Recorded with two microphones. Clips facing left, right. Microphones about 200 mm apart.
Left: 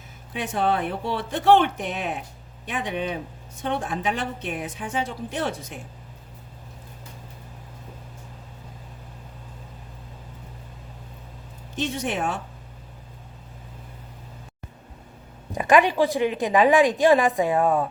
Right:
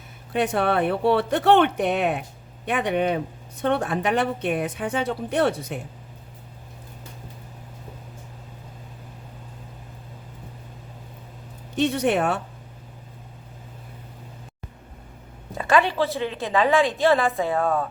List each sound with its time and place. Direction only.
0.3 s a woman's voice: 65° right (ahead or behind)
11.8 s a woman's voice: 60° right (ahead or behind)
15.5 s a woman's voice: 15° left (ahead or behind)